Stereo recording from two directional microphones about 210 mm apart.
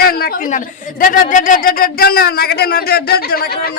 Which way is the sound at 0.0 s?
45° left (ahead or behind).